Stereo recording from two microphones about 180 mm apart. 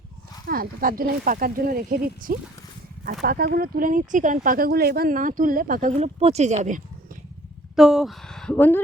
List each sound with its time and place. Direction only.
0.4 s speech: 50° right (ahead or behind)
3.0 s speech: 60° right (ahead or behind); by 6.8 s 40° right (ahead or behind)
7.8 s speech: centre (ahead or behind)